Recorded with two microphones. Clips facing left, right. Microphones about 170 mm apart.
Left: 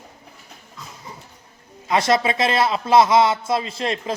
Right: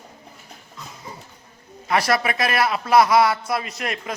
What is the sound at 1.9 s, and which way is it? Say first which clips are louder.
A man's voice: left 2 dB; 25° left (ahead or behind).